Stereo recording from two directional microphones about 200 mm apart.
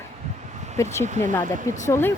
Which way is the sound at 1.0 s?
35° right (ahead or behind).